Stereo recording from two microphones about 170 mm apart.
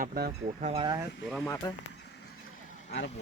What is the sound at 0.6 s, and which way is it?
Speech, 35° right (ahead or behind).